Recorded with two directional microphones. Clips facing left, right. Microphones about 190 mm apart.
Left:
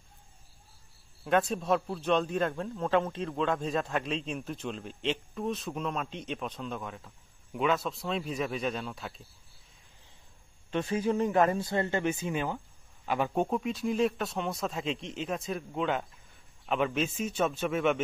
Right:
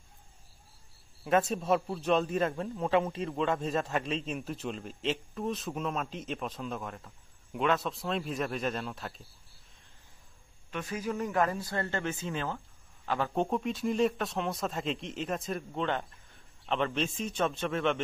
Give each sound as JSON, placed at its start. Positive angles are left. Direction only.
{"t": 1.2, "sound": "a man's voice", "side_deg": 0}
{"t": 10.7, "sound": "a man's voice", "side_deg": 30}